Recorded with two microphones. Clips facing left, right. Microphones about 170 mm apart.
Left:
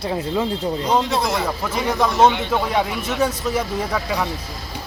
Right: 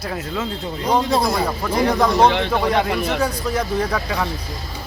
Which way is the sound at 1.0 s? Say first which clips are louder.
Right 3 dB; 35° right (ahead or behind).